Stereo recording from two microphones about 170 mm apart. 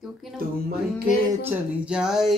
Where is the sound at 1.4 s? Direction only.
5° right (ahead or behind).